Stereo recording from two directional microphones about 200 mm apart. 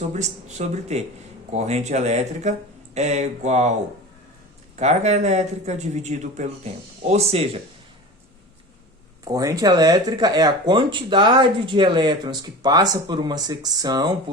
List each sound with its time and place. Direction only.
0.1 s speech: 35° right (ahead or behind)
4.8 s speech: 35° right (ahead or behind)
9.2 s speech: 15° right (ahead or behind)